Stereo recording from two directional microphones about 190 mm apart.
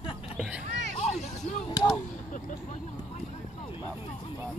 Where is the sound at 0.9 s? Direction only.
35° left (ahead or behind).